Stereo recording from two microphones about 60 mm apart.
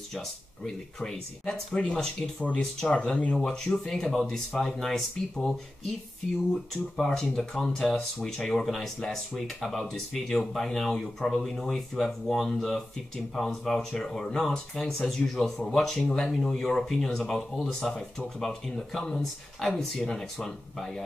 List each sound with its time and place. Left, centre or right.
0.9 s speech: centre
3.3 s speech: centre